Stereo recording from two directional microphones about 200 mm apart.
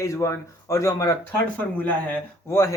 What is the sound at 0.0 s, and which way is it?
Speech, 15° left (ahead or behind).